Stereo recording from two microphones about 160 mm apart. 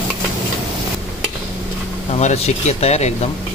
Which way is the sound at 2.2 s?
40° left (ahead or behind).